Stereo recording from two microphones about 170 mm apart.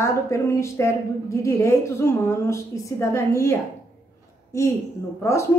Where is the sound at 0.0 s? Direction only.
15° left (ahead or behind).